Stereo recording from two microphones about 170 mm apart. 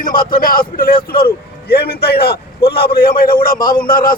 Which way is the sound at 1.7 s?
70° left (ahead or behind).